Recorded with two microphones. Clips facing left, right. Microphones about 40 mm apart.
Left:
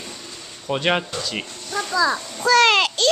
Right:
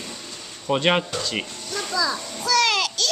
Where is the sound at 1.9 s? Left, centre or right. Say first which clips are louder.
Left 5 dB; left.